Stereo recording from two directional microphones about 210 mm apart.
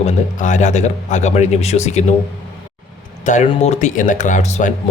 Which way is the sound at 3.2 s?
35° left (ahead or behind).